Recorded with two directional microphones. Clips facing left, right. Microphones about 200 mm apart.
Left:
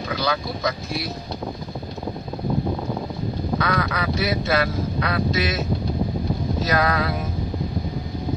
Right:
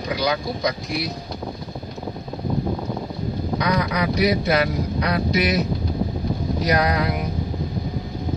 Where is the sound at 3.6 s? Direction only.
15° right (ahead or behind).